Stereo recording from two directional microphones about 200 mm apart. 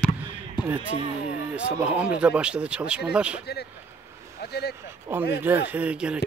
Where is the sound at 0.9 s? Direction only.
35° left (ahead or behind).